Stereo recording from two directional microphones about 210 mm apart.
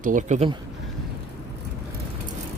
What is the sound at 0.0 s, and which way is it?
Speech, 40° right (ahead or behind).